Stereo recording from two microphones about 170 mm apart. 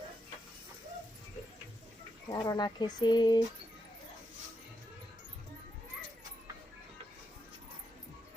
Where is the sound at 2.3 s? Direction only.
25° left (ahead or behind).